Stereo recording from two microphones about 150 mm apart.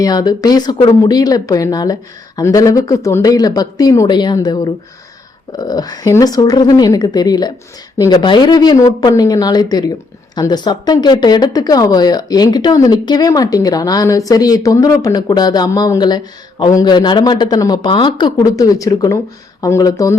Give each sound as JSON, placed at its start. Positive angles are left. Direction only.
{"t": 0.0, "sound": "speech", "side_deg": 25}